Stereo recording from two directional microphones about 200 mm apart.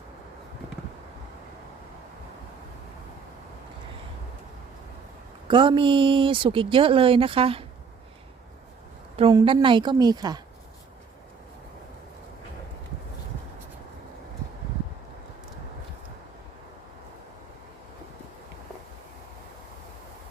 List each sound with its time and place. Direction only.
5.5 s speech: 25° right (ahead or behind)
9.1 s speech: 25° right (ahead or behind)